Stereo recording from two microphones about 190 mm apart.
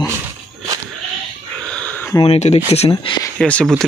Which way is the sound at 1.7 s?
5° left (ahead or behind).